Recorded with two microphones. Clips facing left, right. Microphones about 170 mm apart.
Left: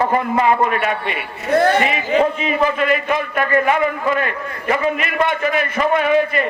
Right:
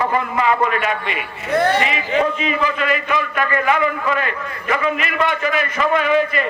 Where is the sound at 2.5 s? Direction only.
50° left (ahead or behind).